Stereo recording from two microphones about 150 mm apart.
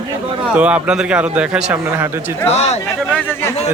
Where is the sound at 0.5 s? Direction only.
10° right (ahead or behind).